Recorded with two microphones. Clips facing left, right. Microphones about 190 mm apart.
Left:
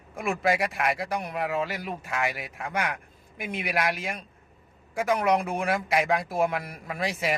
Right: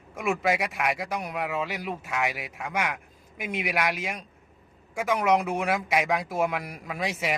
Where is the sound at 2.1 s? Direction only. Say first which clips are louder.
Left 1 dB; 5° right (ahead or behind).